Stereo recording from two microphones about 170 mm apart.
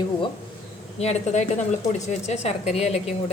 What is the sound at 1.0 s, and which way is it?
A woman's voice, 40° left (ahead or behind).